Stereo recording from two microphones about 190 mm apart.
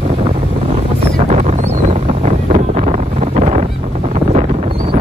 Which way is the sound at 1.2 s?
35° right (ahead or behind).